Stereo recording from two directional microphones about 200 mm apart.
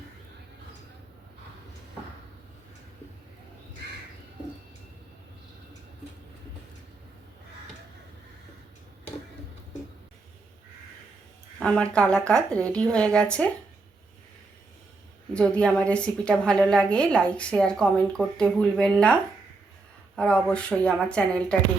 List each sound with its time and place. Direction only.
3.8 s crow: 55° right (ahead or behind)
11.6 s a woman's voice: 5° left (ahead or behind)
15.3 s a woman's voice: 5° left (ahead or behind)